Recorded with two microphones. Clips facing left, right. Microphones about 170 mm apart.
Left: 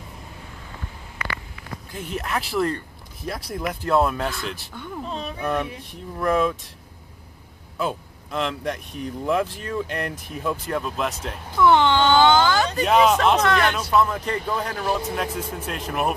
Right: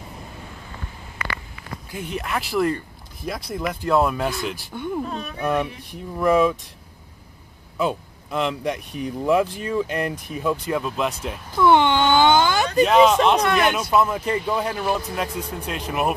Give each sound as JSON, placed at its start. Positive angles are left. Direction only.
{"t": 2.0, "sound": "speech", "side_deg": 0}
{"t": 4.7, "sound": "speech", "side_deg": -20}
{"t": 5.4, "sound": "speech", "side_deg": -5}
{"t": 7.7, "sound": "speech", "side_deg": 0}
{"t": 11.6, "sound": "a sound", "side_deg": -15}
{"t": 12.8, "sound": "speech", "side_deg": 5}
{"t": 13.4, "sound": "speech", "side_deg": -15}